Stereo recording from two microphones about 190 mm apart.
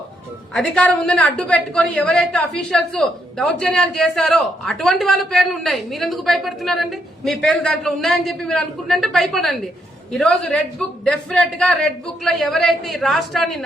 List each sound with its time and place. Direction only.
0.5 s a woman's voice: 5° left (ahead or behind)